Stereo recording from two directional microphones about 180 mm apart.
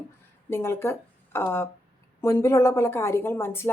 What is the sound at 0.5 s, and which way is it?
A woman's voice, 15° left (ahead or behind).